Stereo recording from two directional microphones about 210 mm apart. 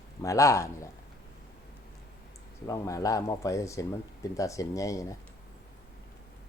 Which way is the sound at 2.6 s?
15° left (ahead or behind).